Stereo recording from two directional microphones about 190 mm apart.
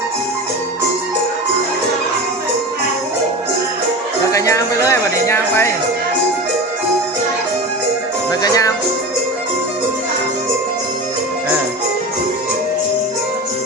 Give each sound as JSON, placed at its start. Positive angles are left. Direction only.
{"t": 4.3, "sound": "speech", "side_deg": 15}
{"t": 8.3, "sound": "music", "side_deg": 20}